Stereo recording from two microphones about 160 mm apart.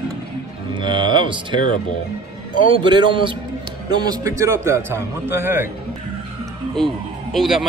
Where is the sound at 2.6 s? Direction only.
30° right (ahead or behind); by 5.7 s 10° right (ahead or behind).